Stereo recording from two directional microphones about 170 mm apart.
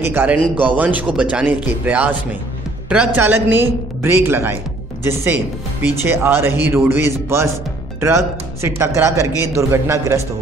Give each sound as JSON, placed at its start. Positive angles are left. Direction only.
{"t": 0.0, "sound": "speech", "side_deg": -10}
{"t": 3.2, "sound": "speech", "side_deg": -10}